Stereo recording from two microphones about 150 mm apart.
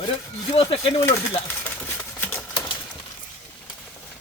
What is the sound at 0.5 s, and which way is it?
Speech, 40° left (ahead or behind).